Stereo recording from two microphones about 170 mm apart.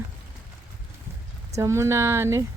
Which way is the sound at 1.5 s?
15° right (ahead or behind).